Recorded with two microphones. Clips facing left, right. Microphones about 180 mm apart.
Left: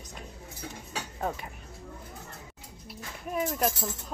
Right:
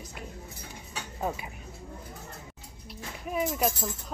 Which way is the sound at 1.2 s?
5° right (ahead or behind).